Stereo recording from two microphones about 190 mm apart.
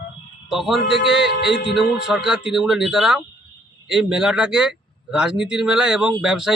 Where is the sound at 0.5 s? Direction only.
Centre (ahead or behind).